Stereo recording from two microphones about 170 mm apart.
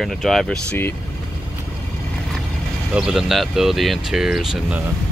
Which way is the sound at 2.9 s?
5° right (ahead or behind).